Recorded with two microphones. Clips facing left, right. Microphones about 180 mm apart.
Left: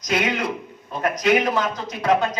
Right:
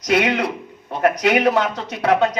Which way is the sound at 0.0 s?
65° right (ahead or behind).